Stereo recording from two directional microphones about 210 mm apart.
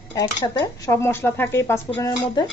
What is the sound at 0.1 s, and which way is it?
Speech, 15° left (ahead or behind).